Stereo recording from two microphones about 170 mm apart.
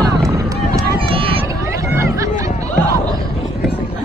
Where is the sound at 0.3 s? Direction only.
20° right (ahead or behind).